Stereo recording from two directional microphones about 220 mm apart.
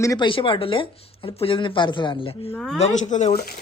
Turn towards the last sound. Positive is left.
turn(degrees=40)  # may be behind; listen again after turning